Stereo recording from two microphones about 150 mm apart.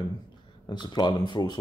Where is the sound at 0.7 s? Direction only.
30° left (ahead or behind).